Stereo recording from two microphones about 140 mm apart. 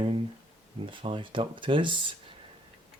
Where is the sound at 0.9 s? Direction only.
35° right (ahead or behind).